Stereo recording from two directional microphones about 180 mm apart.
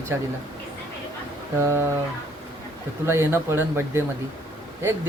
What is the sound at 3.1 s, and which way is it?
Speech, 15° right (ahead or behind).